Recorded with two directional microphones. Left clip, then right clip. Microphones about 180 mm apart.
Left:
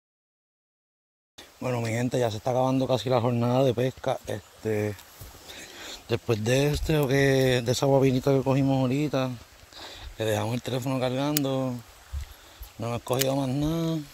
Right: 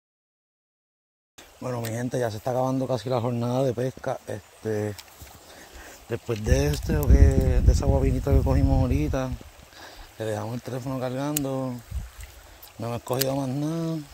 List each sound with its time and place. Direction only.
1.6 s speech: 20° left (ahead or behind)
7.0 s speech: 20° left (ahead or behind)
12.8 s speech: centre (ahead or behind)